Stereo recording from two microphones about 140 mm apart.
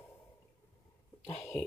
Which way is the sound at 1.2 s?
20° left (ahead or behind).